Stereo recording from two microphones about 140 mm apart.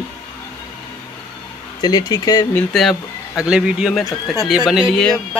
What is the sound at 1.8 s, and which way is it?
Speech, 30° left (ahead or behind).